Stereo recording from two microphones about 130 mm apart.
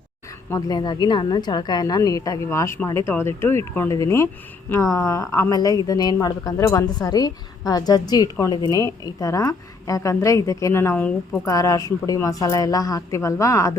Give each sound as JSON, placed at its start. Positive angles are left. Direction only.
{"t": 0.5, "sound": "a woman's voice", "side_deg": 30}